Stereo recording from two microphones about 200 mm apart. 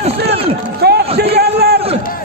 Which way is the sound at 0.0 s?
30° right (ahead or behind).